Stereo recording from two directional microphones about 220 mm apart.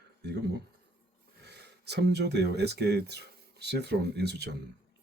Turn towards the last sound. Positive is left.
turn(degrees=-50)  # may be behind; listen again after turning